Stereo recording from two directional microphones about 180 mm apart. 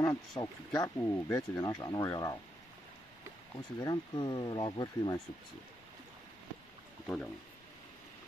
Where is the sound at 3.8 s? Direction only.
25° left (ahead or behind).